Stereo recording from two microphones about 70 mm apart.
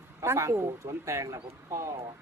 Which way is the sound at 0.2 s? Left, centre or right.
Right.